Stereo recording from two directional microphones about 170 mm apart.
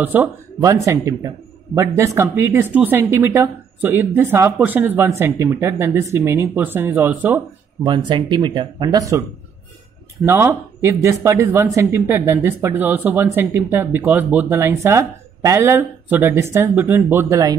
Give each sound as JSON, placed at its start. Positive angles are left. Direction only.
{"t": 0.0, "sound": "speech", "side_deg": -10}
{"t": 7.8, "sound": "speech", "side_deg": -25}
{"t": 10.2, "sound": "speech", "side_deg": -15}